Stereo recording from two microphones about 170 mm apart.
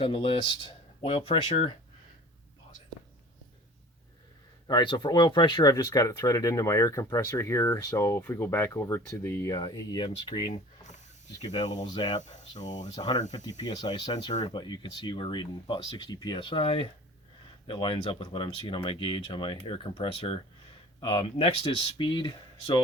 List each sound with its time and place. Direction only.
0.0 s speech: 30° left (ahead or behind)
4.6 s speech: 25° left (ahead or behind)
11.6 s speech: 45° left (ahead or behind)
11.9 s speech: 25° left (ahead or behind)
12.2 s speech: 45° left (ahead or behind)
12.9 s speech: 25° left (ahead or behind)